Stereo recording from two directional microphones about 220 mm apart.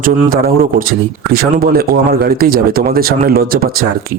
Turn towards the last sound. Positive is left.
turn(degrees=-45)  # may be behind; listen again after turning